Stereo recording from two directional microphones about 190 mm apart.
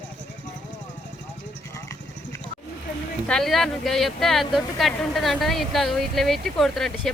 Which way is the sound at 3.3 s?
Centre (ahead or behind).